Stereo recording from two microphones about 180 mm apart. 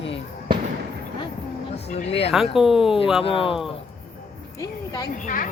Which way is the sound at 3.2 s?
30° left (ahead or behind).